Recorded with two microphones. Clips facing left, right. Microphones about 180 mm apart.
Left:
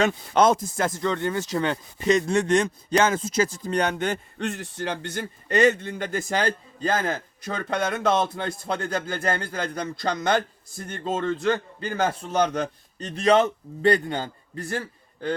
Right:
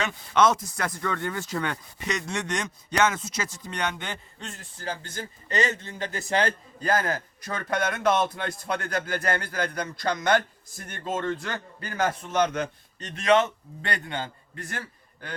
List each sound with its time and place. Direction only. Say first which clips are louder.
0.0 s a man's voice: left 3 dB; 30° left (ahead or behind)
4.4 s a man's voice: left 12 dB; 70° left (ahead or behind); by 6.5 s 50° left (ahead or behind)
6.8 s a man's voice: left 1 dB; 25° left (ahead or behind)